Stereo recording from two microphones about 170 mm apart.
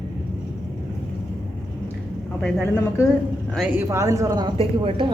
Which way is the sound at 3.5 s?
10° right (ahead or behind).